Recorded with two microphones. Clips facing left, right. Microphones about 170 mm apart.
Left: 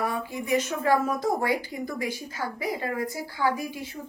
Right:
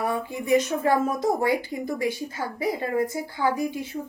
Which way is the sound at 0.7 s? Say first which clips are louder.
Right 1 dB; 20° right (ahead or behind).